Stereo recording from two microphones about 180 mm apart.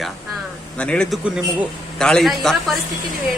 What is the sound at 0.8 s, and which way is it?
Speech, 5° left (ahead or behind).